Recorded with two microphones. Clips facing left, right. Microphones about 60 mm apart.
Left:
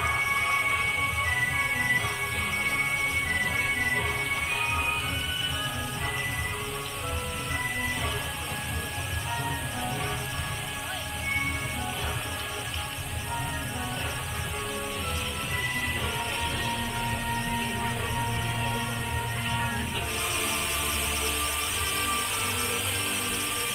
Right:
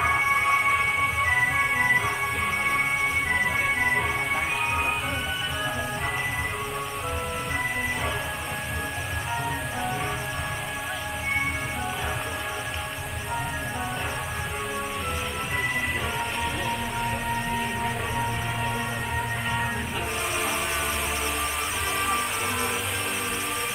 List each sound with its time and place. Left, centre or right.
0.0 s music: right
3.3 s organ: right
16.6 s music: centre